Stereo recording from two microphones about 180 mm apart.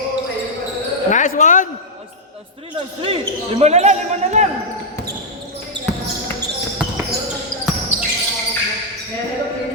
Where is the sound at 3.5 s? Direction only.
35° right (ahead or behind).